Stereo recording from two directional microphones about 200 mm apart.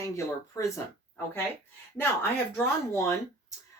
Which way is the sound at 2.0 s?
10° left (ahead or behind).